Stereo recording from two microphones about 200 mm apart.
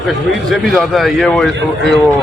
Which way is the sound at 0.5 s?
Centre (ahead or behind).